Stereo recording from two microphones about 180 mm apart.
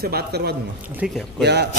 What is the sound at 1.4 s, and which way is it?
Speech, 65° right (ahead or behind).